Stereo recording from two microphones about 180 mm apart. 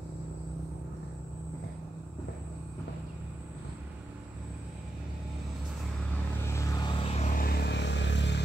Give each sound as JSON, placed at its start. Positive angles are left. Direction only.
{"t": 6.5, "sound": "vehicle", "side_deg": 20}
{"t": 7.0, "sound": "vehicle", "side_deg": 35}